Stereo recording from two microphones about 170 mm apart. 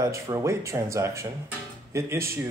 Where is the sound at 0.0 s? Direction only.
20° right (ahead or behind).